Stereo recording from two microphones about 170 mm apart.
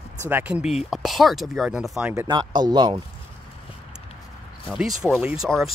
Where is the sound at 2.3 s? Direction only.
25° right (ahead or behind).